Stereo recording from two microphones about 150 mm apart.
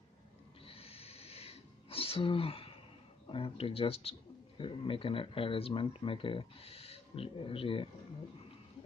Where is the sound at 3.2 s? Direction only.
35° left (ahead or behind).